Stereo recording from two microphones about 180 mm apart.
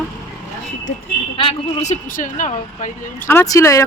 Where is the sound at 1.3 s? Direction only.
30° left (ahead or behind).